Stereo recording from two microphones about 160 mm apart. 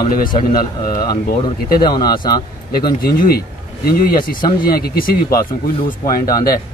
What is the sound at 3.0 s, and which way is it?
Speech, 65° left (ahead or behind).